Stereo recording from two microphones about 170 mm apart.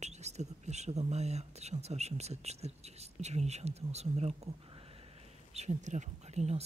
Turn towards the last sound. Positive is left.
turn(degrees=-40)  # may be behind; listen again after turning